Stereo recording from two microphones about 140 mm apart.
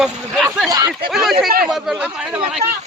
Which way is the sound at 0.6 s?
30° right (ahead or behind).